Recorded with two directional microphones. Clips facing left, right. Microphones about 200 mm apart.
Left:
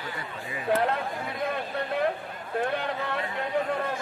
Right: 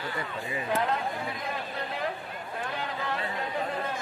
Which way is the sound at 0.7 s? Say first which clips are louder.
Left 3 dB; 60° left (ahead or behind).